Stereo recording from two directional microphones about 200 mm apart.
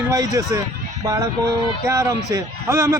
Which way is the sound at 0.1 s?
15° right (ahead or behind).